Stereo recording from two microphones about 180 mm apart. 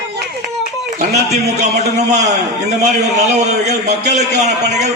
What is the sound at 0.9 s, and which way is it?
A man's voice, 40° right (ahead or behind).